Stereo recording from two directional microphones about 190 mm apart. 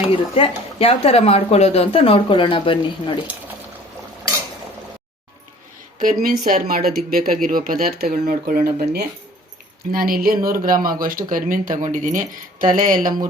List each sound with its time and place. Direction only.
0.3 s a woman's voice: 30° left (ahead or behind)
6.0 s speech: 45° right (ahead or behind)